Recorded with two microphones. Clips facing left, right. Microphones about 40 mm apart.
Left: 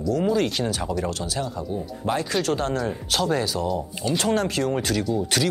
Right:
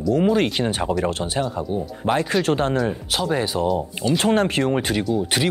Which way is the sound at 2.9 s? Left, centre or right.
Centre.